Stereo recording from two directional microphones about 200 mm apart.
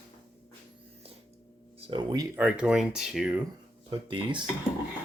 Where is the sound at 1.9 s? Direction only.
25° right (ahead or behind).